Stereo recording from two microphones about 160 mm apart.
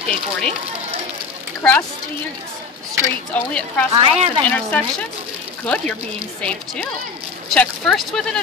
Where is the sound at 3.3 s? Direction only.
10° left (ahead or behind).